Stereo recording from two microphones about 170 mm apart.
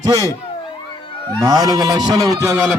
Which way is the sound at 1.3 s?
20° right (ahead or behind).